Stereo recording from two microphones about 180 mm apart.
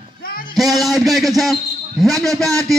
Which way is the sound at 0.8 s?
Centre (ahead or behind).